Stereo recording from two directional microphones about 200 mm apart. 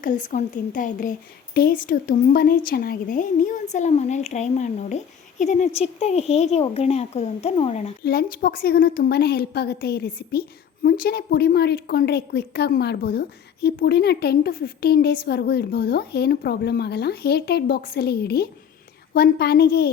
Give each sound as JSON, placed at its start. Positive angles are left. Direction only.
{"t": 0.0, "sound": "a woman's voice", "side_deg": 40}
{"t": 8.0, "sound": "a woman's voice", "side_deg": 50}